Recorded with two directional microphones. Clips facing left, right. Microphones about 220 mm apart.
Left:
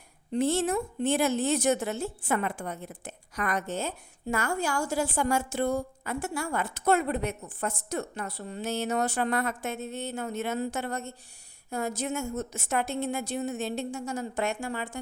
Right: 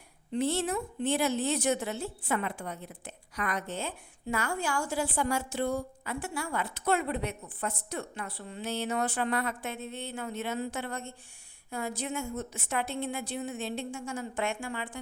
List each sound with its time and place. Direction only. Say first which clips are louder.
0.3 s a woman's voice: left 3 dB; 45° left (ahead or behind)